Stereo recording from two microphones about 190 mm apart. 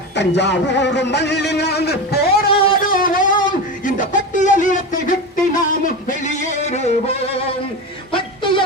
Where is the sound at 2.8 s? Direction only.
45° left (ahead or behind).